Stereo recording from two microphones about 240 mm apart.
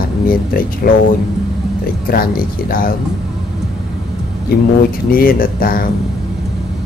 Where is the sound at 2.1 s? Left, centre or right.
Left.